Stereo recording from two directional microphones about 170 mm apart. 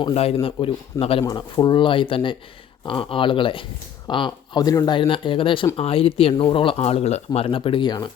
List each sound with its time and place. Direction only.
0.0 s speech: 35° left (ahead or behind)
1.2 s speech: 20° left (ahead or behind)